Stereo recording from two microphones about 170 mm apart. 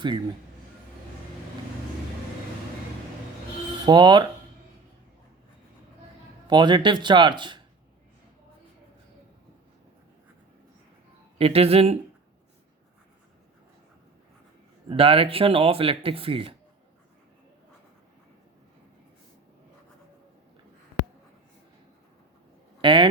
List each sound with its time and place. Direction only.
3.8 s speech: 25° right (ahead or behind)
6.5 s speech: 25° right (ahead or behind)
11.3 s speech: 35° right (ahead or behind)
14.8 s speech: 35° right (ahead or behind)
22.8 s speech: 30° right (ahead or behind)